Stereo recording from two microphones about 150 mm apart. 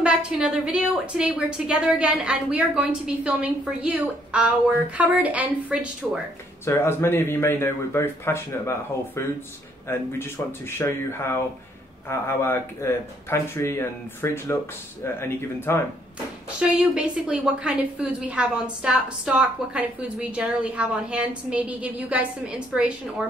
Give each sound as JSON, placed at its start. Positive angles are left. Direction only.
{"t": 0.0, "sound": "a woman's voice", "side_deg": -5}
{"t": 6.6, "sound": "a man's voice", "side_deg": 15}
{"t": 16.5, "sound": "a woman's voice", "side_deg": -5}